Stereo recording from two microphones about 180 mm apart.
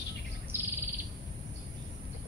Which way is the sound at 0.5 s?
10° right (ahead or behind).